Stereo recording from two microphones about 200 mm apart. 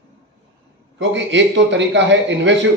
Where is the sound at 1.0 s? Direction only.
65° right (ahead or behind).